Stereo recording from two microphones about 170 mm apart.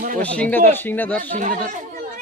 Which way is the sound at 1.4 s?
50° right (ahead or behind).